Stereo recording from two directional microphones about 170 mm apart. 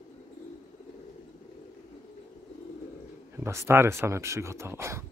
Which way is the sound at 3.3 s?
15° right (ahead or behind).